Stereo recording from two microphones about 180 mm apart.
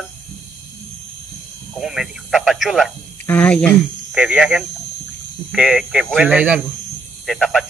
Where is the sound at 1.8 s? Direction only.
Centre (ahead or behind).